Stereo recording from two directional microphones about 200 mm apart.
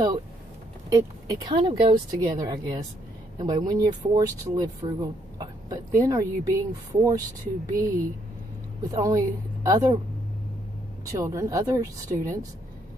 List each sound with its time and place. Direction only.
0.8 s speech: 20° right (ahead or behind)
11.1 s speech: 15° right (ahead or behind)